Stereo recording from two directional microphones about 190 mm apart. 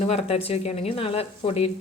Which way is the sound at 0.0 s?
35° left (ahead or behind).